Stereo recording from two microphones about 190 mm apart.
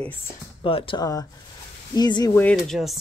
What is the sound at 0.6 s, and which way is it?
Speech, 30° left (ahead or behind).